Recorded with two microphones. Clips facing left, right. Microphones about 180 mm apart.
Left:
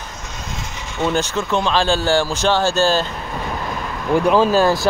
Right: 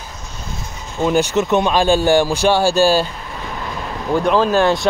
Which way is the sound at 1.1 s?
15° right (ahead or behind).